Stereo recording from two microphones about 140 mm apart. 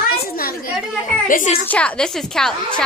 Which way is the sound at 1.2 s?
70° left (ahead or behind).